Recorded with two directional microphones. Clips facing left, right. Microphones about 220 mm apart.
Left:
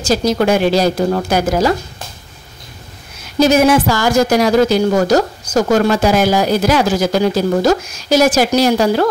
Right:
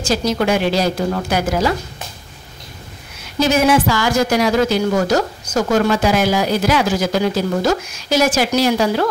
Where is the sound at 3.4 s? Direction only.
40° left (ahead or behind).